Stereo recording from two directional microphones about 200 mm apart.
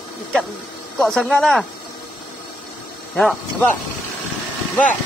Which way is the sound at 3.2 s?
5° left (ahead or behind).